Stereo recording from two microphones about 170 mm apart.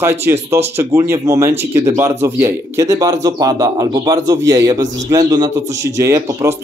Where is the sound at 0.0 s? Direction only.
15° right (ahead or behind).